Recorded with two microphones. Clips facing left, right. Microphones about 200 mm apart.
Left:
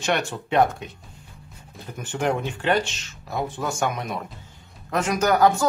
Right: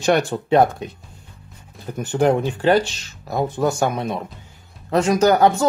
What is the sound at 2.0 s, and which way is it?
Speech, 35° right (ahead or behind).